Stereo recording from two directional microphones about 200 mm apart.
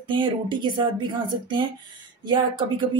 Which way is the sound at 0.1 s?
25° right (ahead or behind).